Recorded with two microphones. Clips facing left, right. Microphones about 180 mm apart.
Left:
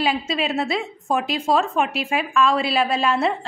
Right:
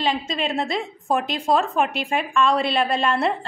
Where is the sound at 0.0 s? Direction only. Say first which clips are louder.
Left 1 dB; 5° left (ahead or behind).